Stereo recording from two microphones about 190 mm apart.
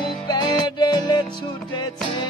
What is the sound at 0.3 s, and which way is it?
Music, 20° left (ahead or behind).